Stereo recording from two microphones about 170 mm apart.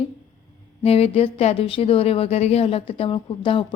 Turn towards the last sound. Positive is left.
turn(degrees=30)  # may be behind; listen again after turning